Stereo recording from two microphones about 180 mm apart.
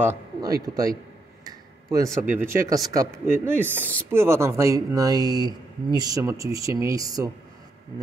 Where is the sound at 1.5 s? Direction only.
20° right (ahead or behind).